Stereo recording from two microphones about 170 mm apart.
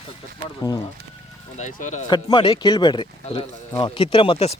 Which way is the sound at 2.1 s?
25° left (ahead or behind).